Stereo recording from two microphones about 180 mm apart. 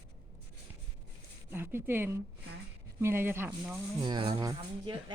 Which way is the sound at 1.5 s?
10° right (ahead or behind).